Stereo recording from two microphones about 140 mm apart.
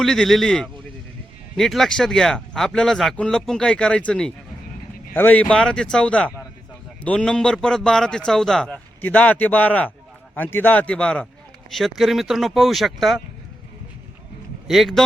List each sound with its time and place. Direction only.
0.0 s a man's voice: 5° left (ahead or behind)
14.7 s speech: centre (ahead or behind)